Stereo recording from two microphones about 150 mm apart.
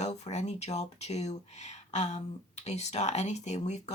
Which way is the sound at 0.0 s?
50° left (ahead or behind).